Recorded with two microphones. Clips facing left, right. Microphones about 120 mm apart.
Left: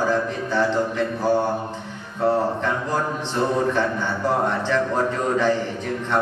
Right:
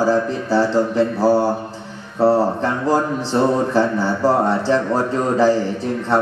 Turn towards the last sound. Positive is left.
turn(degrees=-35)  # may be behind; listen again after turning